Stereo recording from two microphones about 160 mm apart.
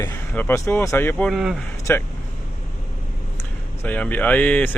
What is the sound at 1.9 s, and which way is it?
Speech, 15° left (ahead or behind).